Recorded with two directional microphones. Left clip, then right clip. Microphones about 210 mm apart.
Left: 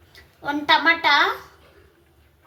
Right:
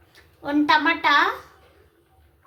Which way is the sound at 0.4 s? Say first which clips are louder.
Left 1 dB; centre (ahead or behind).